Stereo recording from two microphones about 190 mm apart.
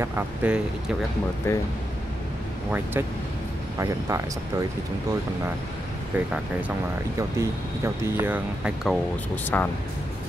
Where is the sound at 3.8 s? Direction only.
15° right (ahead or behind).